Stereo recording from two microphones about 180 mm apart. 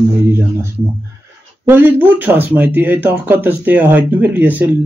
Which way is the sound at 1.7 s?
10° right (ahead or behind).